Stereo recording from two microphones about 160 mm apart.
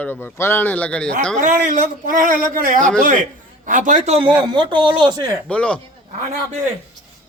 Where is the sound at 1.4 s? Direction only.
55° right (ahead or behind); by 5.4 s 25° right (ahead or behind).